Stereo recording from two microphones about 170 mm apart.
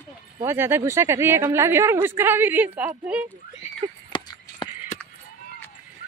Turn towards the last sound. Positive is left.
turn(degrees=25)  # may be behind; listen again after turning